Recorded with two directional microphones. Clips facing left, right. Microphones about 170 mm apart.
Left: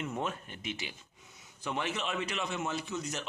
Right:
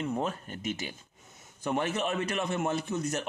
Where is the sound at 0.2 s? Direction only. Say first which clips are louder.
Right 4 dB; 40° right (ahead or behind).